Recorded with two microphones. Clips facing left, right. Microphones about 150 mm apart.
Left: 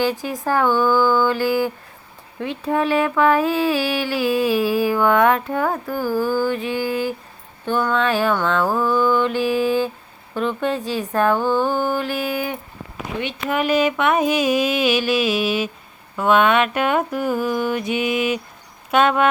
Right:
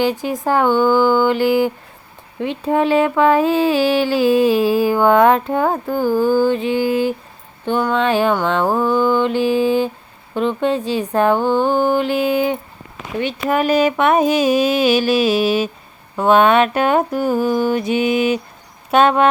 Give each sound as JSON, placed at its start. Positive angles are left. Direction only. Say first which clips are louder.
{"t": 0.0, "sound": "speech", "louder": "right 3 dB", "side_deg": -25}
{"t": 13.5, "sound": "mantra", "louder": "right 3 dB", "side_deg": -40}